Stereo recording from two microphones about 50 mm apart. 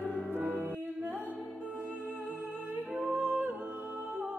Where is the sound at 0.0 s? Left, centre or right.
Left.